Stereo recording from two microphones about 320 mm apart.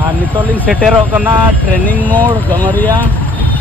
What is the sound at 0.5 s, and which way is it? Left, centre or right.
Speech, centre.